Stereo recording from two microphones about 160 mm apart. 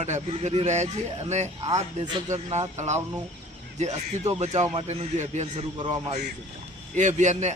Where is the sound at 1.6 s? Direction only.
25° right (ahead or behind).